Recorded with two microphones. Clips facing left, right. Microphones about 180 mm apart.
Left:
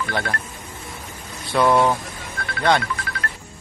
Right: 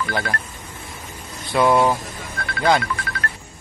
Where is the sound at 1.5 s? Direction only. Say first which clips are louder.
Right 1 dB; centre (ahead or behind).